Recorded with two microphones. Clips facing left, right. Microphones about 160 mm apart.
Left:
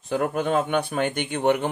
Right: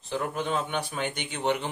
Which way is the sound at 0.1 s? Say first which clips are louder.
Left 6 dB; 55° left (ahead or behind).